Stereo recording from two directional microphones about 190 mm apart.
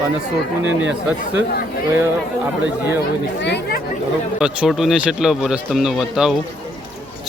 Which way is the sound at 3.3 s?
65° left (ahead or behind).